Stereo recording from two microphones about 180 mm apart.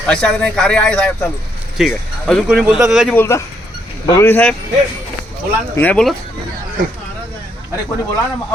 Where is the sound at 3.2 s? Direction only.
15° left (ahead or behind).